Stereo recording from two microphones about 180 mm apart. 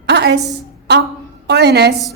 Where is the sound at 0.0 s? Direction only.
70° right (ahead or behind).